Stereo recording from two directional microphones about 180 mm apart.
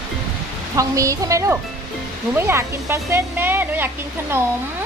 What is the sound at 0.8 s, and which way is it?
Speech, 15° right (ahead or behind).